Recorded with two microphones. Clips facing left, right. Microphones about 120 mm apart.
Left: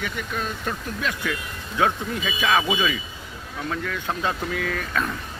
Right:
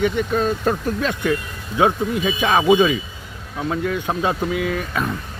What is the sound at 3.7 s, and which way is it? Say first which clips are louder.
Speech: right 6 dB; 25° right (ahead or behind).